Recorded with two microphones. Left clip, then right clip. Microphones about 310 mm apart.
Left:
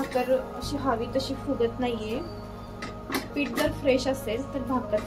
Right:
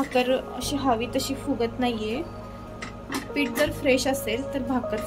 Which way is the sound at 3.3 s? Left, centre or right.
Right.